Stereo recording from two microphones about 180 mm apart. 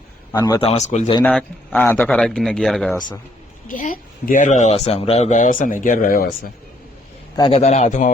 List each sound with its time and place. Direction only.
0.3 s a man's voice: 20° left (ahead or behind)
0.7 s a man's voice: 40° left (ahead or behind)
1.2 s speech: 5° left (ahead or behind)
2.9 s a man's voice: 25° left (ahead or behind)
3.7 s speech: 45° left (ahead or behind)
7.3 s a man's voice: 30° left (ahead or behind)